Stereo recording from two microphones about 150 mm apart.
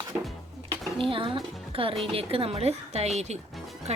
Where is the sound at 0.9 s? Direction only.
35° right (ahead or behind).